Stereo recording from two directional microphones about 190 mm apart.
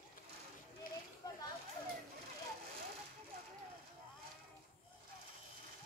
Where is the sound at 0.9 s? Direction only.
45° left (ahead or behind).